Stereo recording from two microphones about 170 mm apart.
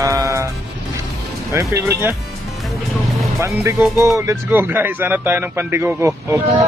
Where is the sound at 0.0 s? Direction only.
20° right (ahead or behind).